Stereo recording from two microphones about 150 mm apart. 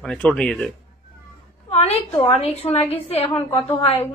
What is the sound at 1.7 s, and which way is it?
A woman's voice, 40° left (ahead or behind).